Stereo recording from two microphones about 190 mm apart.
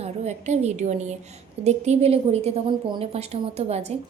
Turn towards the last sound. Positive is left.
turn(degrees=-35)  # may be behind; listen again after turning